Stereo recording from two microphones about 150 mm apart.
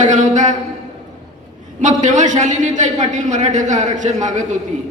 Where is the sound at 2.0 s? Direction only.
55° right (ahead or behind).